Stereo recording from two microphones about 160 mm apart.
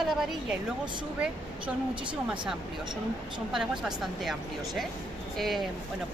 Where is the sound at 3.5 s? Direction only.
Centre (ahead or behind).